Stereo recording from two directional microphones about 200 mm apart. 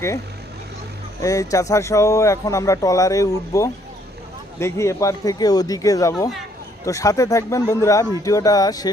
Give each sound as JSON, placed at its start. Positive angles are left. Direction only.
{"t": 1.2, "sound": "speech", "side_deg": 15}